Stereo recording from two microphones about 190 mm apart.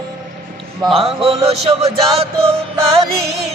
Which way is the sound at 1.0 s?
30° right (ahead or behind).